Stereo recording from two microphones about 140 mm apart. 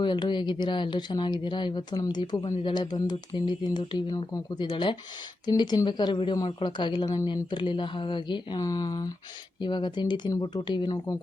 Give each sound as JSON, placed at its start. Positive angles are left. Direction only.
{"t": 0.0, "sound": "speech", "side_deg": 30}